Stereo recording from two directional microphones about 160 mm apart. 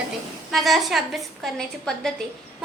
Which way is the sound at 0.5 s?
Centre (ahead or behind).